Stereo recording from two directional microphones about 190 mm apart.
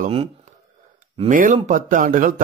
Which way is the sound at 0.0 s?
30° right (ahead or behind).